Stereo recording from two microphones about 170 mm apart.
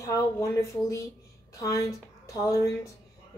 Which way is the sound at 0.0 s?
20° left (ahead or behind).